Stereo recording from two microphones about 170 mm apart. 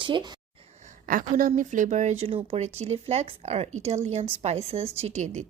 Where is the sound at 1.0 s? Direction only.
55° right (ahead or behind).